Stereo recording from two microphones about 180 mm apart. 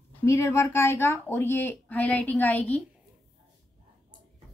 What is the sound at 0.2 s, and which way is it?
A woman's voice, 15° left (ahead or behind).